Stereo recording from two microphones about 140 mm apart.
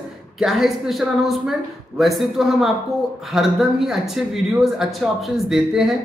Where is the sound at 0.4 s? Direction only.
Centre (ahead or behind).